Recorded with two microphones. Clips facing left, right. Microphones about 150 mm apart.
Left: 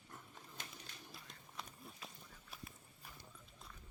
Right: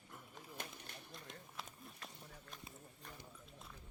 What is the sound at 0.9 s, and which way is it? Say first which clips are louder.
Pigeon: right 3 dB; 55° right (ahead or behind).